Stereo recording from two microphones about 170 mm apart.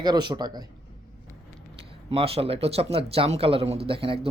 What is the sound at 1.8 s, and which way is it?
Speech, 35° right (ahead or behind).